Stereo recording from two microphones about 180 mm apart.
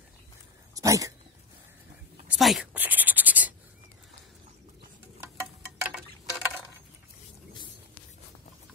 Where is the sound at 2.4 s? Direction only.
5° right (ahead or behind).